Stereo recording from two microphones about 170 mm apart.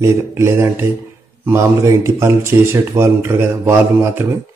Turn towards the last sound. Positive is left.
turn(degrees=-10)  # may be behind; listen again after turning